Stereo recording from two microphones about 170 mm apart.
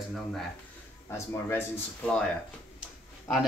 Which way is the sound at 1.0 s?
15° left (ahead or behind).